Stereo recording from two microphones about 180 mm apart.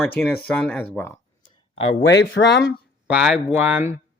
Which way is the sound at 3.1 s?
5° right (ahead or behind).